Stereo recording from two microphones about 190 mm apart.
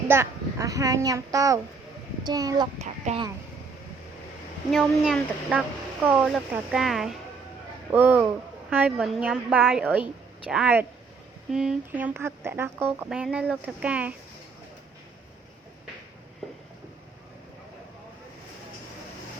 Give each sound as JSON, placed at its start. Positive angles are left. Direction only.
{"t": 0.1, "sound": "speech", "side_deg": -15}
{"t": 2.8, "sound": "speech", "side_deg": -35}
{"t": 4.7, "sound": "speech", "side_deg": 0}